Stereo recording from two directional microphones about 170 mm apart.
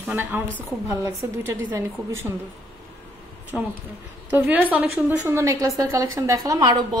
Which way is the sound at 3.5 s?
5° right (ahead or behind).